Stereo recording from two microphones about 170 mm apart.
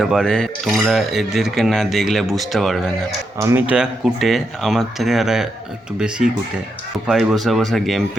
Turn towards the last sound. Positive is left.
turn(degrees=0)  # may be behind; listen again after turning